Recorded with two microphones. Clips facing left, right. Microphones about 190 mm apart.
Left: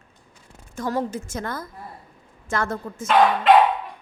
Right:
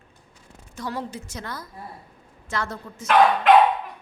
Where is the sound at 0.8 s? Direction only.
45° left (ahead or behind).